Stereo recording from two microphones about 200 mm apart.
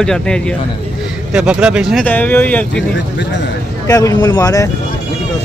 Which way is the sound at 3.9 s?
15° left (ahead or behind).